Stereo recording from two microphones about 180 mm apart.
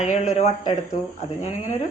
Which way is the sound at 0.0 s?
40° left (ahead or behind).